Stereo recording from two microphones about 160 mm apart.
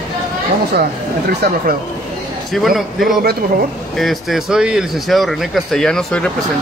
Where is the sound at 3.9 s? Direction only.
Centre (ahead or behind).